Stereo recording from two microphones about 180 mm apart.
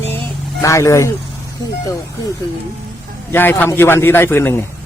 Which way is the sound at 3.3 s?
10° left (ahead or behind).